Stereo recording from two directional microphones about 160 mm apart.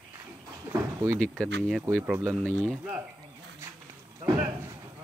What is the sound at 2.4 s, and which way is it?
Speech, 5° left (ahead or behind).